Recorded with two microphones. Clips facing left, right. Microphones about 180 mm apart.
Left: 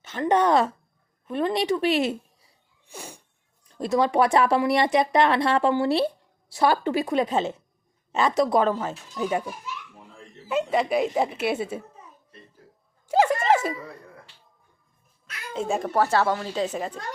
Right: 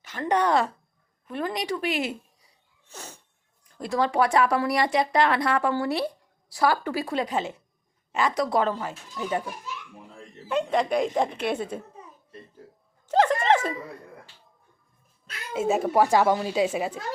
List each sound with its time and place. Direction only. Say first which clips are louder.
0.0 s speech: left 3 dB; 25° left (ahead or behind)
2.8 s sneeze: left 2 dB; 10° left (ahead or behind)
3.7 s speech: left 3 dB; 20° left (ahead or behind)
10.5 s a woman's voice: left 1 dB; 5° left (ahead or behind)
13.1 s a sound: left 1 dB; 10° left (ahead or behind)
15.5 s speech: right 2 dB; 5° right (ahead or behind)